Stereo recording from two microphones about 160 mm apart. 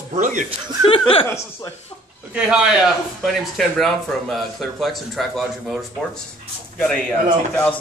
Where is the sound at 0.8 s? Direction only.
35° left (ahead or behind).